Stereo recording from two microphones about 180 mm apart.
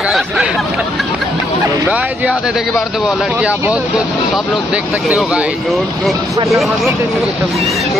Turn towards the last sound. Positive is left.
turn(degrees=0)  # may be behind; listen again after turning